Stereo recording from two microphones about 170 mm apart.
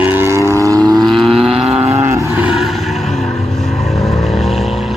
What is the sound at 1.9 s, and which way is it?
Vehicle, 15° right (ahead or behind).